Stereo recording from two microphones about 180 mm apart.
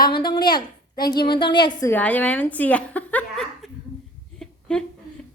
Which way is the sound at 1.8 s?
10° left (ahead or behind).